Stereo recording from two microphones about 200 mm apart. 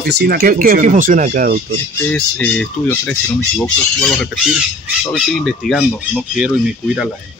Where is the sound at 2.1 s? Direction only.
5° left (ahead or behind).